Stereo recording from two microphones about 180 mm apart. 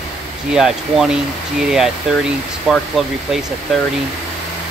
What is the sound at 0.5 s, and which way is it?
Speech, 5° right (ahead or behind).